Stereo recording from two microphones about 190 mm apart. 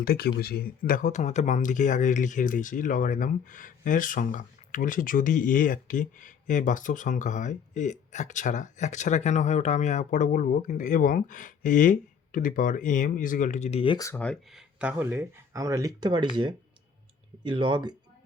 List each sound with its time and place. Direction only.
0.0 s speech: 55° left (ahead or behind); by 14.1 s 25° left (ahead or behind)
14.1 s speech: 5° left (ahead or behind)
14.8 s speech: 10° right (ahead or behind); by 17.9 s 25° right (ahead or behind)